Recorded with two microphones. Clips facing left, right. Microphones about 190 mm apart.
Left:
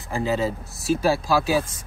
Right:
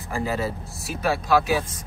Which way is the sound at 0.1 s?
20° left (ahead or behind).